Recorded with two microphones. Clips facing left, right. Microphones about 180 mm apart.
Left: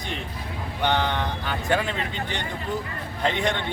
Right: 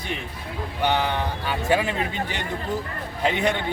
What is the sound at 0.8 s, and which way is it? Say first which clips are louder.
Speech: right 1 dB; 10° right (ahead or behind).